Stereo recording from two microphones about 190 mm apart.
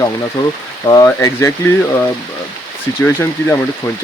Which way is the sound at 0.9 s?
20° left (ahead or behind).